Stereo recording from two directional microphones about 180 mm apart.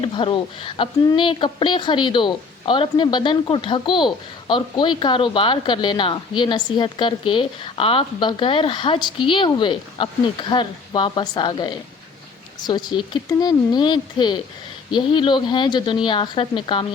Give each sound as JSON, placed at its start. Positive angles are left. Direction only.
{"t": 0.0, "sound": "a woman's voice", "side_deg": 30}
{"t": 12.9, "sound": "a woman's voice", "side_deg": 25}